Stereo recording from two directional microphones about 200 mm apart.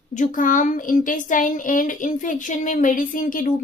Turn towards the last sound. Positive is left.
turn(degrees=40)  # may be behind; listen again after turning